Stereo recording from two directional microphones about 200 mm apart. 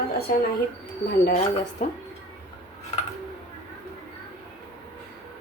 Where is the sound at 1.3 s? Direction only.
35° left (ahead or behind).